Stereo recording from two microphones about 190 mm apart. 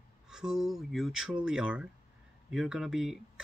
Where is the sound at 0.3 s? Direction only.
5° right (ahead or behind).